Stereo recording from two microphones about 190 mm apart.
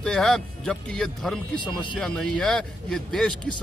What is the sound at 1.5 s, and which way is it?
Speech, 25° left (ahead or behind).